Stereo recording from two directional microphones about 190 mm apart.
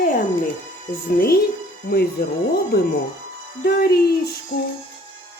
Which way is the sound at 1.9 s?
55° left (ahead or behind).